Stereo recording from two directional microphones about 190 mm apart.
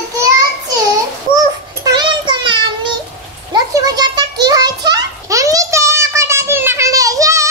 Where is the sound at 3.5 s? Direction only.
20° right (ahead or behind).